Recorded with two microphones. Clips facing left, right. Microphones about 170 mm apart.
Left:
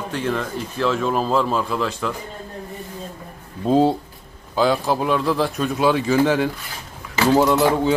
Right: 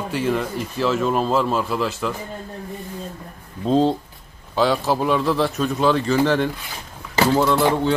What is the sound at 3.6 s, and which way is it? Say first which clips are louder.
Speech: left 1 dB; 10° left (ahead or behind).